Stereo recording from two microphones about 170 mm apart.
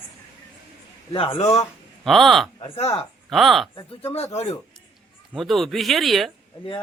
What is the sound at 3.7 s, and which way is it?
Speech, 30° left (ahead or behind).